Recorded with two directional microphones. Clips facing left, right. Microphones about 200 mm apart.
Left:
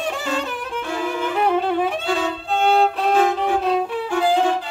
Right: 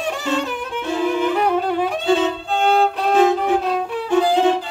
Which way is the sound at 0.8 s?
20° right (ahead or behind).